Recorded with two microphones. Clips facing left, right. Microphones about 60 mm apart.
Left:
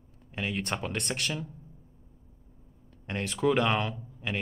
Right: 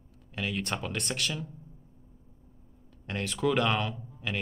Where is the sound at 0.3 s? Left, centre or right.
Left.